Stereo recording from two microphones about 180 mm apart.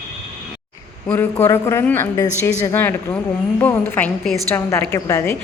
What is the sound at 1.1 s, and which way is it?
A woman's voice, 15° left (ahead or behind).